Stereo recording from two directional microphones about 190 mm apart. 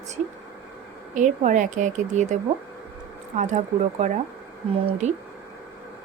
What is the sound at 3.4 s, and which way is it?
Speech, 40° right (ahead or behind).